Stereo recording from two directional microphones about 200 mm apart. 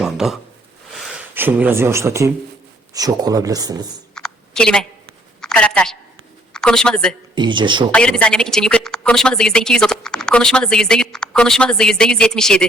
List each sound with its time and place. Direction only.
0.0 s a sound: centre (ahead or behind)
0.9 s speech: 5° right (ahead or behind)
4.1 s a sound: 5° left (ahead or behind)
6.5 s speech: 5° left (ahead or behind)
7.3 s speech: 25° right (ahead or behind)
7.9 s a woman's voice: 5° left (ahead or behind)